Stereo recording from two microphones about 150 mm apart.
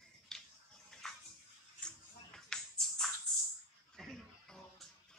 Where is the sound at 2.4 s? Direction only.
5° left (ahead or behind).